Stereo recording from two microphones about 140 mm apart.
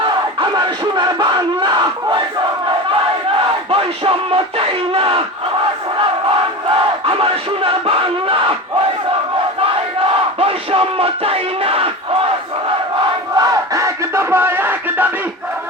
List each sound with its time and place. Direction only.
0.0 s battle cry: 35° right (ahead or behind)
3.4 s battle cry: 40° right (ahead or behind)
7.0 s speech: 40° right (ahead or behind)
10.4 s battle cry: 40° right (ahead or behind)
13.3 s battle cry: 25° right (ahead or behind)